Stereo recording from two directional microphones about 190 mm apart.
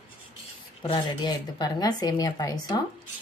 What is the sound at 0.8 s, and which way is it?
Speech, 25° left (ahead or behind).